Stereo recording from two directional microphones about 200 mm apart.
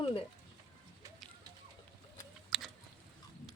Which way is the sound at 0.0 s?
30° left (ahead or behind).